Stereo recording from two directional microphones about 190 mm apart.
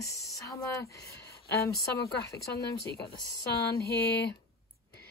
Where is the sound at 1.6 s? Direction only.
15° left (ahead or behind).